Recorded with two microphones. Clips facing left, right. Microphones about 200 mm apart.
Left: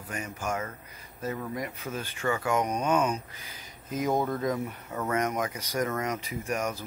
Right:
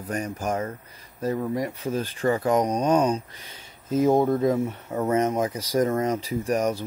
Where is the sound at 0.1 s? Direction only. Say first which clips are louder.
Right 6 dB; 35° right (ahead or behind).